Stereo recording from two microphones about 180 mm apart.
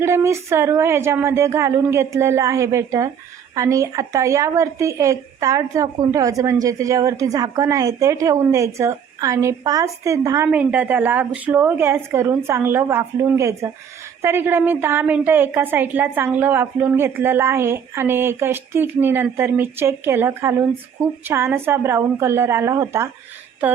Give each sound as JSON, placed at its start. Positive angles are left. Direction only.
{"t": 0.0, "sound": "speech", "side_deg": -15}